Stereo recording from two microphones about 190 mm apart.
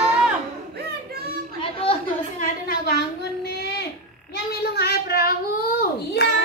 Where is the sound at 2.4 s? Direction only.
55° left (ahead or behind).